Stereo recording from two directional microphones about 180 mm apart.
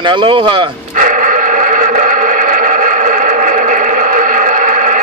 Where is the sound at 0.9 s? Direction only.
45° right (ahead or behind).